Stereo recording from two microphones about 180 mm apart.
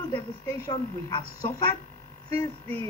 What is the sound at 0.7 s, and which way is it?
Speech, 20° left (ahead or behind).